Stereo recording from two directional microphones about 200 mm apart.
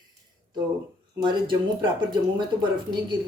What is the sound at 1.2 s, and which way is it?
Speech, 20° right (ahead or behind).